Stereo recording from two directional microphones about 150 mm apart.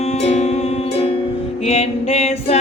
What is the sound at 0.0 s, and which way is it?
Music, 45° left (ahead or behind).